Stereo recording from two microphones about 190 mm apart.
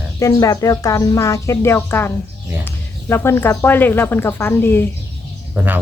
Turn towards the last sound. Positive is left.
turn(degrees=-10)  # may be behind; listen again after turning